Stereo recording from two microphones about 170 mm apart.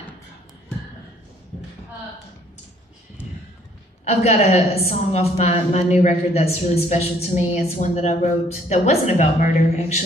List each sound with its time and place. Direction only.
4.0 s a woman's voice: 40° left (ahead or behind)